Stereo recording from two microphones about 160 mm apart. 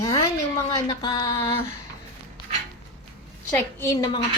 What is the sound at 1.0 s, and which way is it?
Speech, 25° left (ahead or behind).